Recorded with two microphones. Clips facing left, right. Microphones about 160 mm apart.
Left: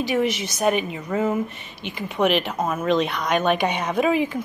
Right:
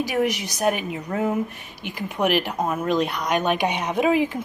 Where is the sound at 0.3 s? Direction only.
15° right (ahead or behind).